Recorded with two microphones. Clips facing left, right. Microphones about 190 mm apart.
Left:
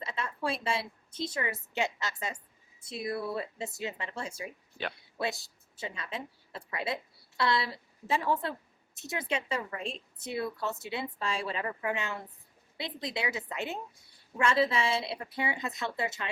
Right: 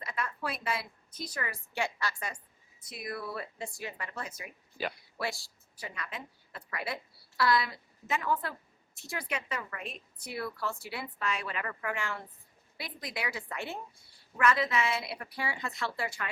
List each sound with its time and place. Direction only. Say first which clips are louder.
0.0 s a woman's voice: left 2 dB; 25° left (ahead or behind)